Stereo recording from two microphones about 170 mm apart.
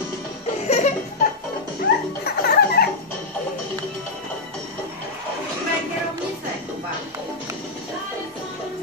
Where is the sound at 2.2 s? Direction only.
70° left (ahead or behind).